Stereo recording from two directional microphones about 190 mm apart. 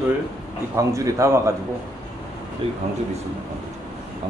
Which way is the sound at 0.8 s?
15° right (ahead or behind).